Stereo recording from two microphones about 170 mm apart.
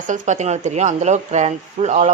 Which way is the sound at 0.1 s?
45° right (ahead or behind).